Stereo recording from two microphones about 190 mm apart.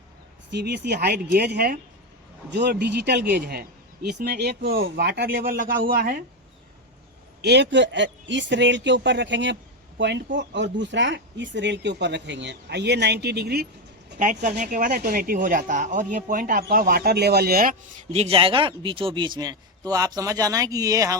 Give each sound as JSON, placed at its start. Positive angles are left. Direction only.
{"t": 0.5, "sound": "speech", "side_deg": -60}
{"t": 2.5, "sound": "speech", "side_deg": -60}
{"t": 7.4, "sound": "speech", "side_deg": -65}
{"t": 14.2, "sound": "speech", "side_deg": -45}
{"t": 18.1, "sound": "speech", "side_deg": -30}